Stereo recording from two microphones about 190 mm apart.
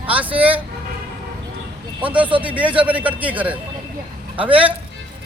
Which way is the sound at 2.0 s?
5° right (ahead or behind).